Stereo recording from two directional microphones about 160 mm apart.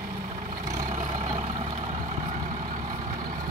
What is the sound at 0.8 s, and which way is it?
Vehicle, 50° right (ahead or behind).